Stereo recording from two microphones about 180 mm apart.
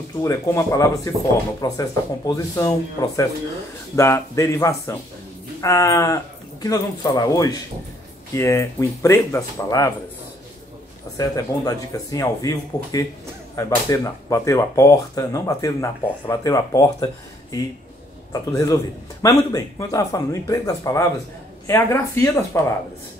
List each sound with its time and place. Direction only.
0.2 s speech: 15° left (ahead or behind)
11.1 s speech: 20° left (ahead or behind)